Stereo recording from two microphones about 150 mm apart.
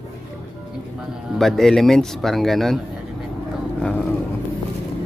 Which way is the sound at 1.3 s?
Centre (ahead or behind).